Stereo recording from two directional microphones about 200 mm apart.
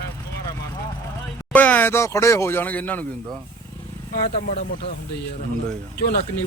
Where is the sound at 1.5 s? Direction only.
10° left (ahead or behind).